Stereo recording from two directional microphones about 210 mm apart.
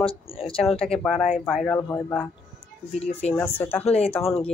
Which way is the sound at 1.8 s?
10° left (ahead or behind).